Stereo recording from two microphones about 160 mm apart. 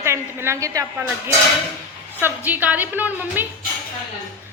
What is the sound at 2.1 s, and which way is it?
A woman's voice, 10° right (ahead or behind).